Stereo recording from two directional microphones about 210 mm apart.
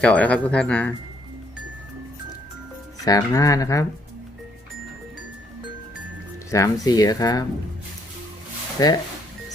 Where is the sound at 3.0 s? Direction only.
15° left (ahead or behind).